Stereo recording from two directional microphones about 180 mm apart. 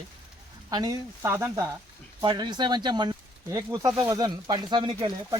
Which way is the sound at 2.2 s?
25° right (ahead or behind).